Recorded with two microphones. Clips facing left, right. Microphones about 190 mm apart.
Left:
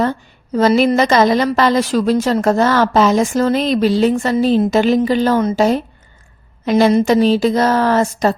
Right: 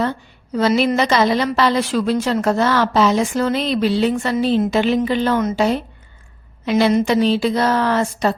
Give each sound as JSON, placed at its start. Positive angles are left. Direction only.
{"t": 0.0, "sound": "a woman's voice", "side_deg": 45}